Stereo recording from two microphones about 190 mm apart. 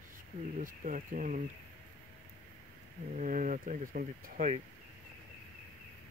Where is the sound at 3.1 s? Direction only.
45° right (ahead or behind).